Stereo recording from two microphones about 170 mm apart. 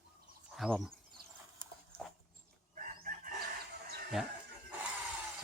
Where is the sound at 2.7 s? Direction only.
50° right (ahead or behind).